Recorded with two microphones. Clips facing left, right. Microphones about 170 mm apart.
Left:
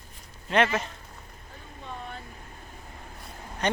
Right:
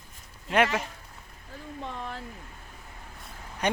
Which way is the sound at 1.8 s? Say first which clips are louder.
Right 2 dB; 90° right.